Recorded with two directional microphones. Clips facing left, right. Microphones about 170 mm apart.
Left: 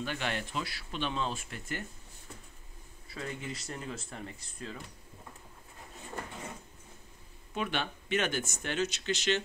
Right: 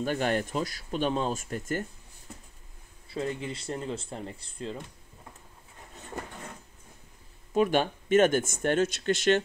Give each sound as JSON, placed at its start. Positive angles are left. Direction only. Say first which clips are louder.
{"t": 0.0, "sound": "speech", "louder": "right 8 dB", "side_deg": -45}
{"t": 3.1, "sound": "speech", "louder": "right 7 dB", "side_deg": -30}
{"t": 7.5, "sound": "speech", "louder": "right 10 dB", "side_deg": -40}